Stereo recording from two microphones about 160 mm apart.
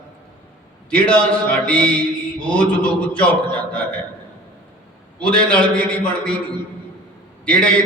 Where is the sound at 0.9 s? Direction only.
5° left (ahead or behind).